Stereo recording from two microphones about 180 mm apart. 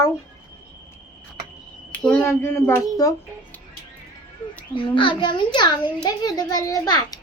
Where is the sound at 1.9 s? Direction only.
5° left (ahead or behind).